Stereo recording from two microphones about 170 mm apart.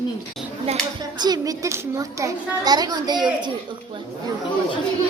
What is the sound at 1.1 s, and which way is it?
A child's voice, 25° right (ahead or behind).